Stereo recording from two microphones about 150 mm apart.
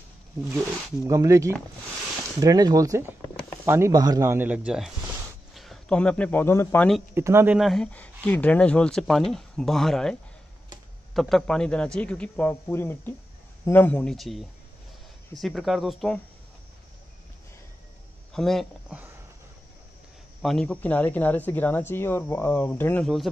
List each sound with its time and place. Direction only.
1.0 s speech: 20° right (ahead or behind); by 6.9 s 15° left (ahead or behind)
7.2 s speech: 15° right (ahead or behind)
7.5 s speech: centre (ahead or behind)
11.1 s speech: centre (ahead or behind)
18.3 s a man's voice: centre (ahead or behind)
20.4 s speech: 5° left (ahead or behind)
23.0 s speech: centre (ahead or behind)